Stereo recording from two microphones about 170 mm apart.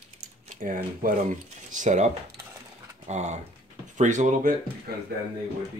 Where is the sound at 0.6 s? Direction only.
55° right (ahead or behind).